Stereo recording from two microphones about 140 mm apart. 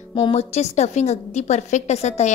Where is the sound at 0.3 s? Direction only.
50° left (ahead or behind).